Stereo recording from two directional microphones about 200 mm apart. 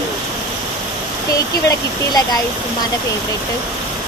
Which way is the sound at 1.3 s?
15° left (ahead or behind).